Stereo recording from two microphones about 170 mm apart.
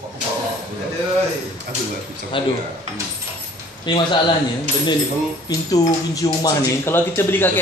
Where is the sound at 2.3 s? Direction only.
30° left (ahead or behind).